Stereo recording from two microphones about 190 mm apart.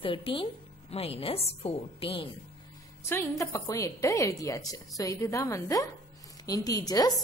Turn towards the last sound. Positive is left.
turn(degrees=20)  # may be behind; listen again after turning